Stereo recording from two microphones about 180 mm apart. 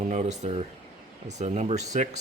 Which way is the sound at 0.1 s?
40° right (ahead or behind).